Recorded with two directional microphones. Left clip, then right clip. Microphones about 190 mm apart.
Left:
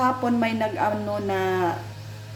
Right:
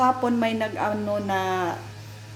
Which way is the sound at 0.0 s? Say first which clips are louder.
Right 1 dB; 15° right (ahead or behind).